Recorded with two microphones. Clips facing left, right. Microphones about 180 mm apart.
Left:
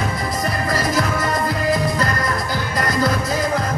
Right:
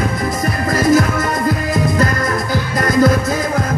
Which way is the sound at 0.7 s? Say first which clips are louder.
Right 9 dB; 50° right (ahead or behind).